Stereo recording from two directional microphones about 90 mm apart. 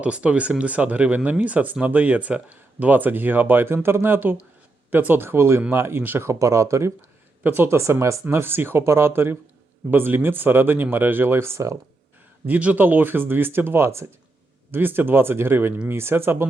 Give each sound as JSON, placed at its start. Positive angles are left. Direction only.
{"t": 0.0, "sound": "speech", "side_deg": -15}
{"t": 12.5, "sound": "speech", "side_deg": -15}